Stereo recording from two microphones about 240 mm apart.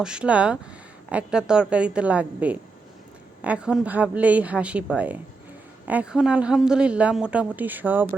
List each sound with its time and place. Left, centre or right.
0.0 s a woman's voice: centre